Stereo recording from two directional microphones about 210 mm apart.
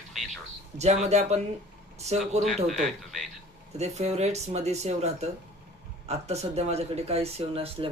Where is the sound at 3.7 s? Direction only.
30° right (ahead or behind).